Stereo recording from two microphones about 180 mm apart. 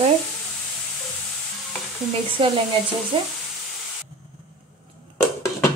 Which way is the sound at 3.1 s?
30° right (ahead or behind).